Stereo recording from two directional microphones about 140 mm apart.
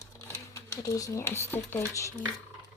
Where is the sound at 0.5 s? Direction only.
25° left (ahead or behind).